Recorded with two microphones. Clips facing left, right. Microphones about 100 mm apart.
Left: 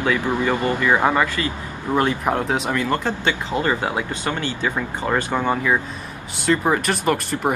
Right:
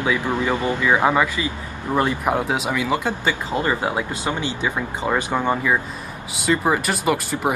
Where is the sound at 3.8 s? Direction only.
15° right (ahead or behind).